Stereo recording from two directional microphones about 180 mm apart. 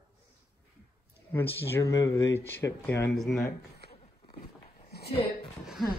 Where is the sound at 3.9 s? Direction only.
30° left (ahead or behind).